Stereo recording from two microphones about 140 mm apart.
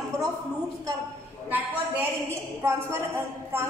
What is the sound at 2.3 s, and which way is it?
A woman's voice, 20° right (ahead or behind).